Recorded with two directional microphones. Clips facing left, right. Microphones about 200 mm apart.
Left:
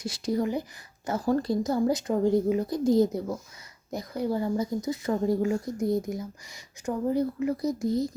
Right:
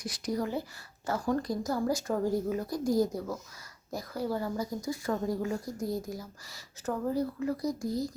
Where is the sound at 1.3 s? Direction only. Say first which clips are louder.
Left 6 dB; 30° left (ahead or behind).